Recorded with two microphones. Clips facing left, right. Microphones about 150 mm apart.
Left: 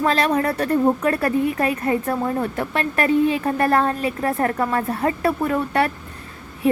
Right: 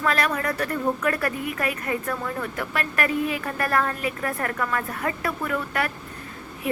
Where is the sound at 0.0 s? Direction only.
30° left (ahead or behind).